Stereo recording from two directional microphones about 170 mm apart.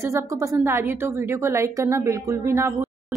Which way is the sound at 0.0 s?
15° right (ahead or behind).